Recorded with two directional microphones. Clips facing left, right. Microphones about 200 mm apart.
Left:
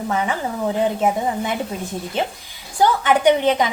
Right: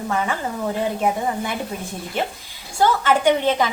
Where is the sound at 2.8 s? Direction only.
20° left (ahead or behind).